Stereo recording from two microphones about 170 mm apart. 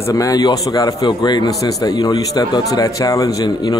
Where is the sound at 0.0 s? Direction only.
20° left (ahead or behind).